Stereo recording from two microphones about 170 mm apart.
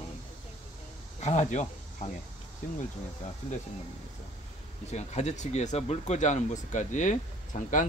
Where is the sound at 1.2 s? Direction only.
40° left (ahead or behind).